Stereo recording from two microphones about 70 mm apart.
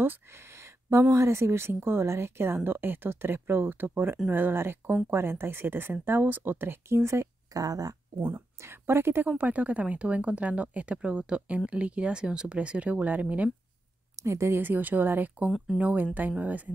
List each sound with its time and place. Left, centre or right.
0.8 s speech: right
7.5 s speech: right
8.3 s speech: right
9.3 s speech: right
14.2 s speech: right